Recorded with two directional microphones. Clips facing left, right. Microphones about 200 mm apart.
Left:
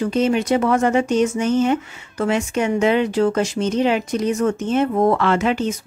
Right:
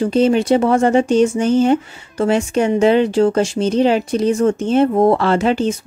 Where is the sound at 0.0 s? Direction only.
30° right (ahead or behind).